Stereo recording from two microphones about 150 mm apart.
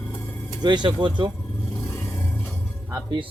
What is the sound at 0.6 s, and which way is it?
Speech, 30° right (ahead or behind).